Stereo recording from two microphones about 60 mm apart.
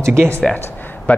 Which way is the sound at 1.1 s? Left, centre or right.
Left.